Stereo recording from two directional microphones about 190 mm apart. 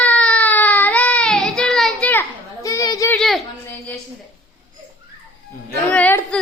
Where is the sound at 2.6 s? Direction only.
20° left (ahead or behind).